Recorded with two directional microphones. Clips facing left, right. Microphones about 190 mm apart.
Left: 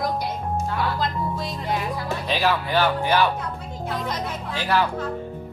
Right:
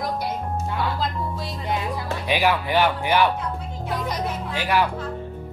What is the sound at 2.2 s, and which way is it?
Speech, 15° right (ahead or behind).